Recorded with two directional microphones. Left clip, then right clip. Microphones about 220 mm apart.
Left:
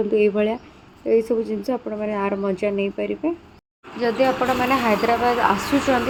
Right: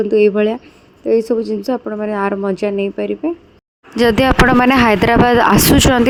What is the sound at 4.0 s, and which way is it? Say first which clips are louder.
Speech: right 8 dB; 45° right (ahead or behind).